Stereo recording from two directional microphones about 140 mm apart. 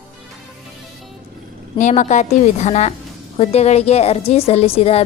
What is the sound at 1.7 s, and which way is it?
A woman's voice, 60° left (ahead or behind).